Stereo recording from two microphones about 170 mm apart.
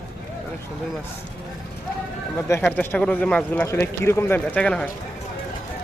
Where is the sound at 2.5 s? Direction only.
10° left (ahead or behind).